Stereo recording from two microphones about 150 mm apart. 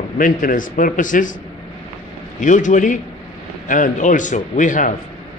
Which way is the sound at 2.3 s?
55° left (ahead or behind).